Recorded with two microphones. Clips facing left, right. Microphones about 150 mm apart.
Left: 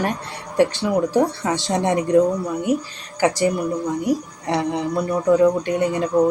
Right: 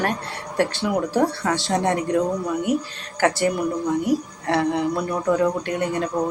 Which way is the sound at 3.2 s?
10° left (ahead or behind).